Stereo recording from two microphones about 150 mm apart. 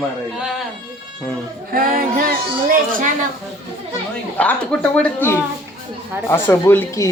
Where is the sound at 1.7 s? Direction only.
70° right (ahead or behind).